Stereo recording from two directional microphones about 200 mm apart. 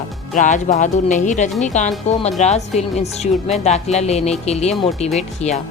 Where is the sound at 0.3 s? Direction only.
40° left (ahead or behind).